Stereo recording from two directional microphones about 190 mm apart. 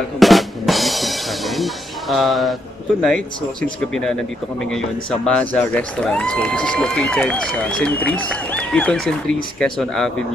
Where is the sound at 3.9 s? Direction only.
5° left (ahead or behind).